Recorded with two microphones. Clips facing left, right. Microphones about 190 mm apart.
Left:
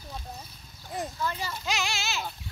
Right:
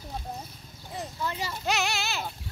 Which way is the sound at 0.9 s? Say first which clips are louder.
Left 1 dB; 20° right (ahead or behind).